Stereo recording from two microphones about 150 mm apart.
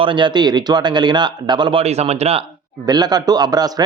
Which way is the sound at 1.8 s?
45° right (ahead or behind).